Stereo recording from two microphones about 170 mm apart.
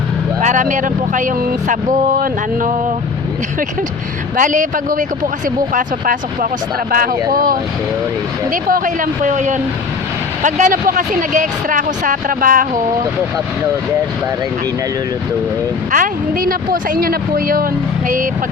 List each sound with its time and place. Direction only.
0.4 s speech: 50° right (ahead or behind)
4.4 s speech: 50° right (ahead or behind)
8.7 s speech: 50° right (ahead or behind)
15.9 s speech: 55° right (ahead or behind)